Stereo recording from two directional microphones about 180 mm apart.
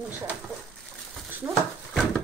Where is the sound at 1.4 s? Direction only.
15° right (ahead or behind).